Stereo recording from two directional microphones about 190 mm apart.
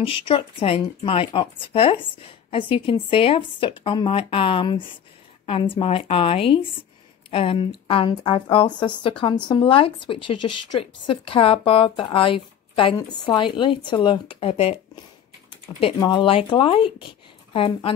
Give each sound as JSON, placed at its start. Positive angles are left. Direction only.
{"t": 0.3, "sound": "speech", "side_deg": 30}
{"t": 15.8, "sound": "speech", "side_deg": 25}